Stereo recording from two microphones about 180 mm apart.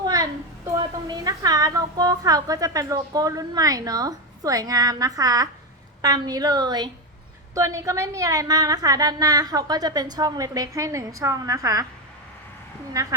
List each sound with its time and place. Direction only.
0.0 s a woman's voice: 20° right (ahead or behind)
12.9 s a woman's voice: 20° right (ahead or behind)